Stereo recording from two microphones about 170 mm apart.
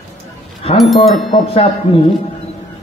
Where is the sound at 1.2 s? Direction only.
35° left (ahead or behind).